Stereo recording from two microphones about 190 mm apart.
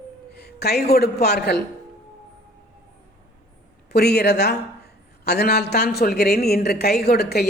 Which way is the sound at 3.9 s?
60° left (ahead or behind).